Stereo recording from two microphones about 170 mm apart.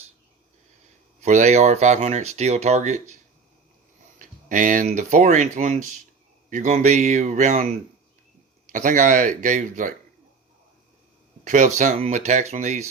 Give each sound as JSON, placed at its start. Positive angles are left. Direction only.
{"t": 1.2, "sound": "speech", "side_deg": -45}
{"t": 4.2, "sound": "speech", "side_deg": -50}
{"t": 11.4, "sound": "speech", "side_deg": -45}